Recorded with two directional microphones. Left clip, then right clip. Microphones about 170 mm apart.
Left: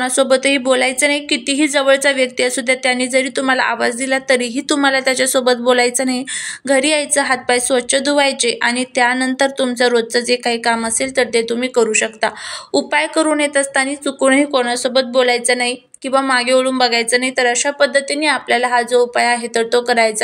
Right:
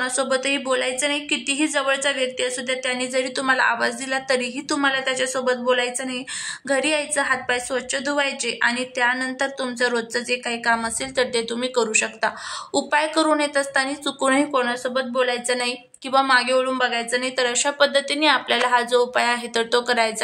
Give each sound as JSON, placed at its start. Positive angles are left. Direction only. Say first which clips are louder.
{"t": 0.0, "sound": "a woman's voice", "louder": "left 8 dB", "side_deg": 25}